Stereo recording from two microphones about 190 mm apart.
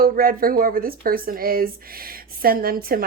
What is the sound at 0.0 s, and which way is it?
A woman's voice, 50° right (ahead or behind).